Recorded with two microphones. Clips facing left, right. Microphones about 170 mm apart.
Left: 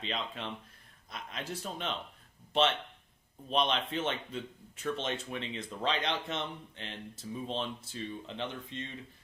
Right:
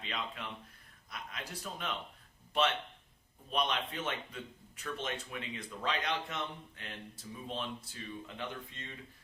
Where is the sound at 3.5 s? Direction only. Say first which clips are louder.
Left 4 dB; 25° left (ahead or behind).